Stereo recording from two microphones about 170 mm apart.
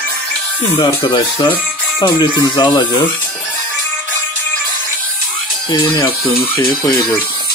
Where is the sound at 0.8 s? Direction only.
30° left (ahead or behind).